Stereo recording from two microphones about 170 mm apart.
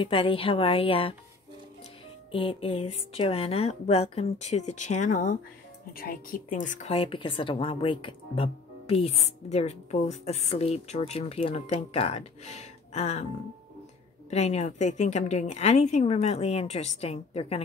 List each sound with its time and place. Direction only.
0.0 s speech: 30° left (ahead or behind)
2.3 s speech: 30° left (ahead or behind)
14.3 s speech: 40° left (ahead or behind)